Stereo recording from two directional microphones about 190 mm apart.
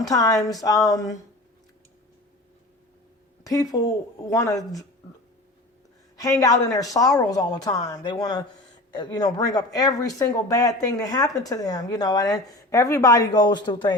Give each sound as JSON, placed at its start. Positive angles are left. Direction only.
{"t": 0.0, "sound": "speech", "side_deg": 20}
{"t": 3.4, "sound": "speech", "side_deg": 20}
{"t": 6.4, "sound": "speech", "side_deg": 20}